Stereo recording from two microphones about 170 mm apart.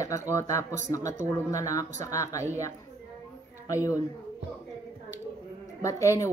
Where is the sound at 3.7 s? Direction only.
20° left (ahead or behind).